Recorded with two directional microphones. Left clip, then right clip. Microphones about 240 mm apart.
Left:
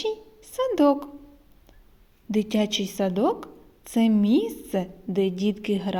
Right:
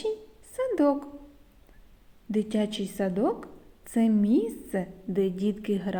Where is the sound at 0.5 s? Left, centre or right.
Left.